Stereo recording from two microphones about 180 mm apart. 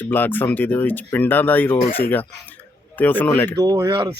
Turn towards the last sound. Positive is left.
turn(degrees=-20)  # may be behind; listen again after turning